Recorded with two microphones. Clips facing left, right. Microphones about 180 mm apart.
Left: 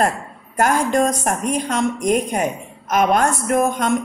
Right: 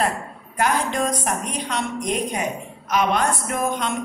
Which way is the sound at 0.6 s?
45° left (ahead or behind).